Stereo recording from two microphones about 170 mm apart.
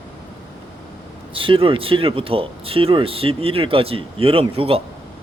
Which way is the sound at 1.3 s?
30° right (ahead or behind).